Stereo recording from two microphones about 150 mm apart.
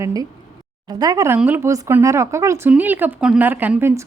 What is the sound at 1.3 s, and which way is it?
A woman's voice, 10° right (ahead or behind).